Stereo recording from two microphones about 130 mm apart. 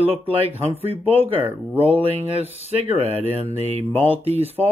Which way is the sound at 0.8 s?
50° right (ahead or behind).